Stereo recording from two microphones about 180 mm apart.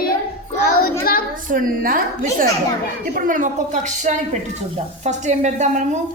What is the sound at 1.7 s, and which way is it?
Speech, 50° right (ahead or behind).